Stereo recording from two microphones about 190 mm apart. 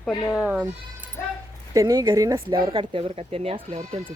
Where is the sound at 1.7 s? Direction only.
20° right (ahead or behind).